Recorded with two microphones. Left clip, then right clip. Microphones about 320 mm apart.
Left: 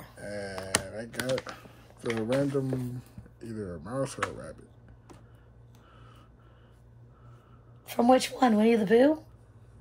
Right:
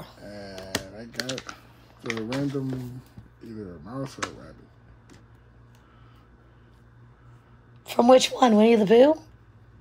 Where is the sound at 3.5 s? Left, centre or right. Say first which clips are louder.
Left 3 dB; left.